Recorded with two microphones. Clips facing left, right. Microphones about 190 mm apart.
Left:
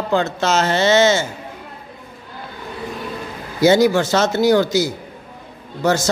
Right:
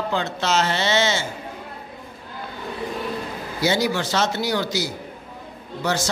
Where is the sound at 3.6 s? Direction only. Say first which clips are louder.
Left 9 dB; 45° left (ahead or behind).